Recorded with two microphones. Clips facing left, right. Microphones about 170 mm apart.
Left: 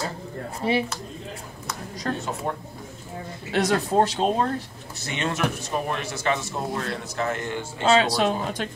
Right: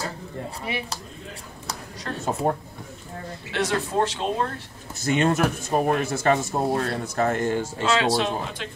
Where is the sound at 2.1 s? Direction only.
40° left (ahead or behind).